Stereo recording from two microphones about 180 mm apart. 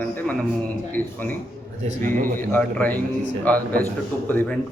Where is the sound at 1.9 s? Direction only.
50° right (ahead or behind).